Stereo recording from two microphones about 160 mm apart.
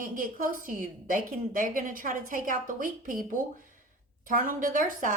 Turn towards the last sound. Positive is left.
turn(degrees=-55)  # may be behind; listen again after turning